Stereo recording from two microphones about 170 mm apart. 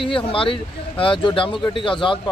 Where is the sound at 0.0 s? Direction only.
30° left (ahead or behind).